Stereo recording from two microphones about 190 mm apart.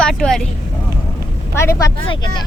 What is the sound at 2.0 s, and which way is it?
Speech, 25° left (ahead or behind).